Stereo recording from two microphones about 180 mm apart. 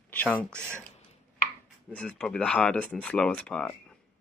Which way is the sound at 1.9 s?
5° left (ahead or behind).